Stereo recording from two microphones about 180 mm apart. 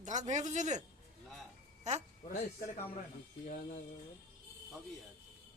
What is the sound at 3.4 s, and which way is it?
Speech, 45° left (ahead or behind).